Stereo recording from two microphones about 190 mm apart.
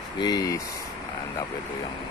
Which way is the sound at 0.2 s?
20° left (ahead or behind).